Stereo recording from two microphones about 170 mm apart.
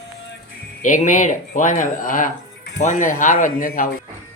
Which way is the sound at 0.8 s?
50° left (ahead or behind).